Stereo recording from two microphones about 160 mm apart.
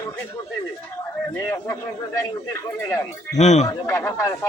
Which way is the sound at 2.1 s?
20° left (ahead or behind).